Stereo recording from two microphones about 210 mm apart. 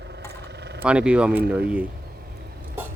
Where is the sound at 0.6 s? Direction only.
50° right (ahead or behind).